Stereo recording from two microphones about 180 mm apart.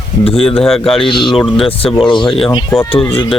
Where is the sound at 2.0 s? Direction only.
25° left (ahead or behind).